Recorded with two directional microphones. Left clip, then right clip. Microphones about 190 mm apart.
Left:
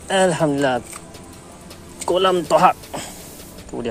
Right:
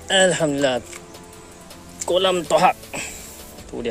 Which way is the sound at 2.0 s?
30° right (ahead or behind).